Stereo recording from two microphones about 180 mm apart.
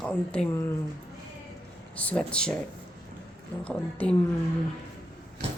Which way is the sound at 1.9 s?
5° left (ahead or behind).